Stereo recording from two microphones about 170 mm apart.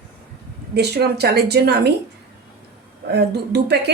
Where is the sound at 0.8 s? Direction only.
75° right (ahead or behind).